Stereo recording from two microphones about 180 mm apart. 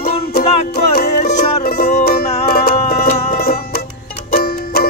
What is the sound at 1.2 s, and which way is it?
Music, 40° left (ahead or behind).